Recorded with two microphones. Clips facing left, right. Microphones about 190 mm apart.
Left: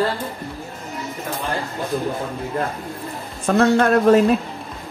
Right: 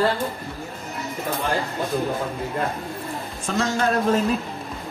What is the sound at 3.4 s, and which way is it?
Speech, 60° left (ahead or behind).